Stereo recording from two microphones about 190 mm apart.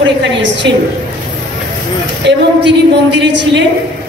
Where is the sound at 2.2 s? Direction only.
65° right (ahead or behind).